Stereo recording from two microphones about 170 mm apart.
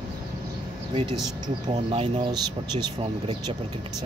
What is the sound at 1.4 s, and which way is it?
Speech, 35° right (ahead or behind).